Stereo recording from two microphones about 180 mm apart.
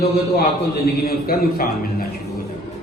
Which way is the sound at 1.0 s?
55° left (ahead or behind).